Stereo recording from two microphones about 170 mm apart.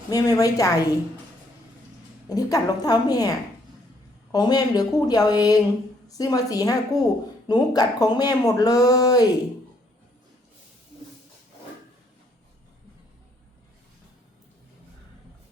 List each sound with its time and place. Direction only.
0.1 s speech: 20° left (ahead or behind)
2.3 s speech: 20° left (ahead or behind)